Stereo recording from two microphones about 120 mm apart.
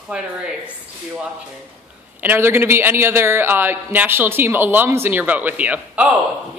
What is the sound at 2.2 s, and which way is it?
A woman's voice, 20° right (ahead or behind).